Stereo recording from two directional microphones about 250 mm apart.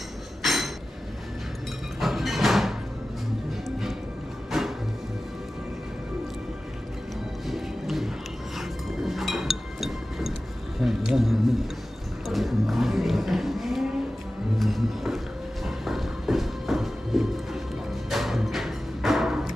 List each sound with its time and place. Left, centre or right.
0.4 s a sound: centre
2.0 s music: centre
4.5 s music: centre
7.4 s music: centre
8.5 s chink: centre
10.8 s a sound: centre
12.3 s music: centre